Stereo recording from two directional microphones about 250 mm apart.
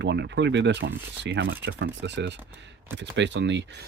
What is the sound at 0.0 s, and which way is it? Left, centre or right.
Speech, right.